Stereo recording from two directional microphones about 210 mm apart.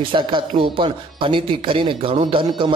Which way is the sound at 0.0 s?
25° right (ahead or behind).